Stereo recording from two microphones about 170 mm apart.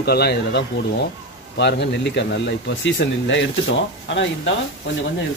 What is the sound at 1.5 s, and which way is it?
Speech, 90° left.